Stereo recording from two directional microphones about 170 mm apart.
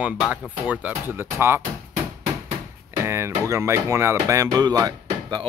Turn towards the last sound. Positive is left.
turn(degrees=-25)  # may be behind; listen again after turning